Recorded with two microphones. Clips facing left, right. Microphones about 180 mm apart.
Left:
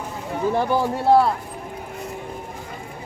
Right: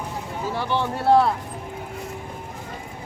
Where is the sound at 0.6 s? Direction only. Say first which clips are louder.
Left 3 dB; 40° left (ahead or behind).